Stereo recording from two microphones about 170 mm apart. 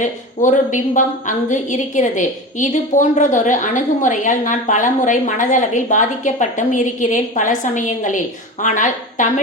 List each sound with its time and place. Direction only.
0.0 s a woman's voice: 45° left (ahead or behind)